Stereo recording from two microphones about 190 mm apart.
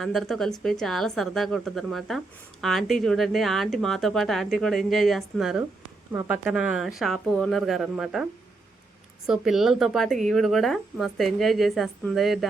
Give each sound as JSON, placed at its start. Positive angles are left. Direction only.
{"t": 0.0, "sound": "speech", "side_deg": 0}